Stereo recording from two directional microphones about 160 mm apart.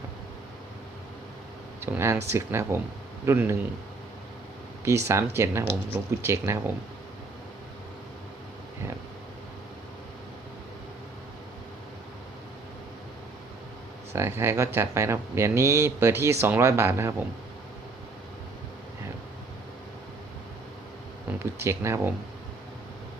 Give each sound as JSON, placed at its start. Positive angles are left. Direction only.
{"t": 1.8, "sound": "speech", "side_deg": -15}
{"t": 4.9, "sound": "speech", "side_deg": -15}
{"t": 14.1, "sound": "speech", "side_deg": -15}
{"t": 21.2, "sound": "speech", "side_deg": -15}